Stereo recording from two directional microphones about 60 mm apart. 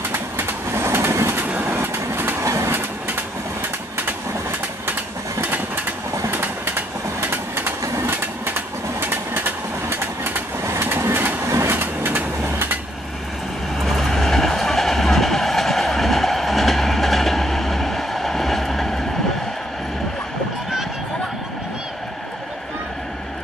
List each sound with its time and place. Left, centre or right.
0.8 s train: right
2.4 s train: right
6.3 s train: right
9.3 s vehicle: right
11.4 s vehicle: right
11.7 s train: right
13.8 s train: centre